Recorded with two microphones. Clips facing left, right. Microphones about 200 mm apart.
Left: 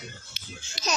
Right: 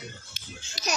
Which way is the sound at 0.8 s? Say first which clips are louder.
Left 1 dB; 40° right (ahead or behind).